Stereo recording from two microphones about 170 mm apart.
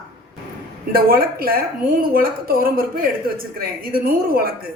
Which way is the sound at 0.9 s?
60° right (ahead or behind).